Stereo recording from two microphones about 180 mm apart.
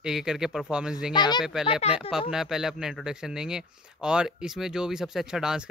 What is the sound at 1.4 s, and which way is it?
A man's voice, 5° right (ahead or behind).